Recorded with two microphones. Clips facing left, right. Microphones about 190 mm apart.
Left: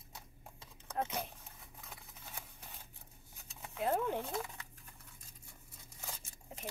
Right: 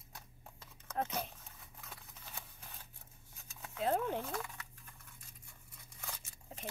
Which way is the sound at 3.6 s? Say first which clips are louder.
Even; 15° left (ahead or behind).